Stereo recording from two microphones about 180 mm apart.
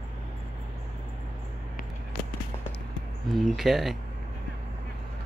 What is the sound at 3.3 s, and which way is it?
Speech, centre (ahead or behind).